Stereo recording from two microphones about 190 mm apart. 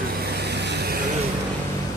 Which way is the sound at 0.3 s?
60° right (ahead or behind).